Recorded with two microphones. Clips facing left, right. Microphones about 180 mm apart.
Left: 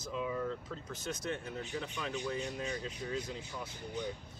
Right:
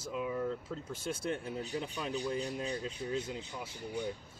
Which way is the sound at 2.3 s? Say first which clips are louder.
Right 2 dB; 35° right (ahead or behind).